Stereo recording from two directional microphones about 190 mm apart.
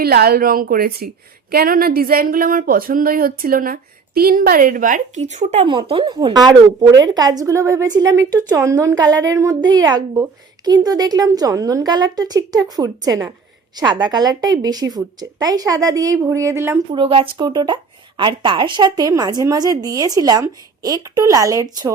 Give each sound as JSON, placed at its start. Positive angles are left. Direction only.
{"t": 0.0, "sound": "a woman's voice", "side_deg": -55}
{"t": 17.0, "sound": "a woman's voice", "side_deg": -25}